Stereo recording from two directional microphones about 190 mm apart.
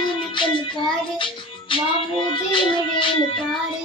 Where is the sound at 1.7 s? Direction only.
25° left (ahead or behind).